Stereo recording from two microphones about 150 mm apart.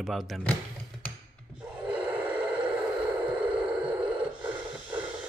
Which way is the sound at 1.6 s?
10° right (ahead or behind).